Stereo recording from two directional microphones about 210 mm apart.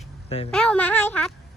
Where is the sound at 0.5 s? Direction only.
5° left (ahead or behind).